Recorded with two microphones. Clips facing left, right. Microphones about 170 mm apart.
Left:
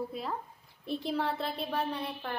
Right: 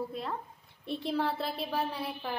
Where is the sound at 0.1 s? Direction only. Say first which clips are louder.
Even; centre (ahead or behind).